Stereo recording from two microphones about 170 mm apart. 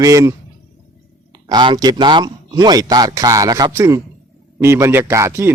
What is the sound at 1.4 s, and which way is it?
Speech, 30° right (ahead or behind).